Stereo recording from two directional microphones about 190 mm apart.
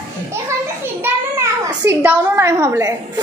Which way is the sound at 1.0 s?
15° right (ahead or behind).